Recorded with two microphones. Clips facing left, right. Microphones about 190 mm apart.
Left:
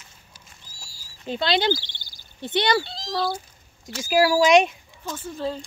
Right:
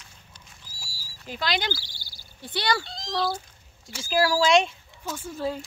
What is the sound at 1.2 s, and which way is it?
Speech, 25° left (ahead or behind).